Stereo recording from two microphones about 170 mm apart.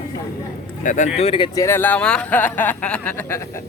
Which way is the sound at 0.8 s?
50° left (ahead or behind).